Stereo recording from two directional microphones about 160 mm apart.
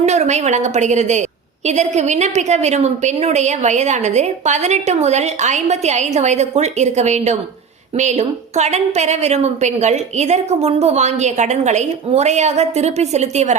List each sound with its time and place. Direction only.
0.0 s a woman's voice: 45° right (ahead or behind)